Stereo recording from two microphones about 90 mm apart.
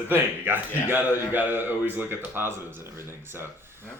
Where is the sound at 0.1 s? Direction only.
25° right (ahead or behind).